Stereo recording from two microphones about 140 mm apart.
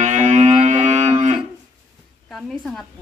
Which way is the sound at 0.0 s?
60° right (ahead or behind).